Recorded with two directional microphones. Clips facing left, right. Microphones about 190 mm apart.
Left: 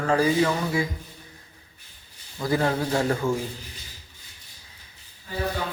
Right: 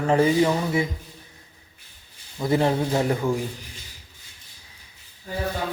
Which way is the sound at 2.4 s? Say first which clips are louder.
Right 3 dB; 20° right (ahead or behind).